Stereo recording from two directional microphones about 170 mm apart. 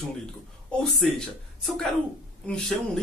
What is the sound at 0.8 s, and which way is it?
Speech, centre (ahead or behind).